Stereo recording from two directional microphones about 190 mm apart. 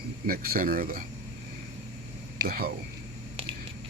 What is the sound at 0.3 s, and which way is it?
Speech, 50° right (ahead or behind).